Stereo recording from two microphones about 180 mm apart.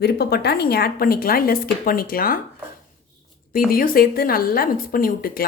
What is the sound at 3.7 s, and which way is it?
A woman's voice, 55° left (ahead or behind).